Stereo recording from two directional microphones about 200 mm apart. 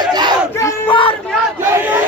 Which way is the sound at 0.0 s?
20° right (ahead or behind).